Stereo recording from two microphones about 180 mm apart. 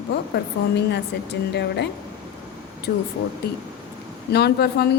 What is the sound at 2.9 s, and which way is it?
Speech, 60° left (ahead or behind).